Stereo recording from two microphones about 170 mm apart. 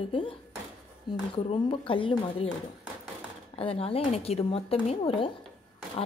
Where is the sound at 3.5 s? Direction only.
35° left (ahead or behind).